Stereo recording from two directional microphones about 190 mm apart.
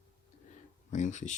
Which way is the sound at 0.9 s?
40° left (ahead or behind).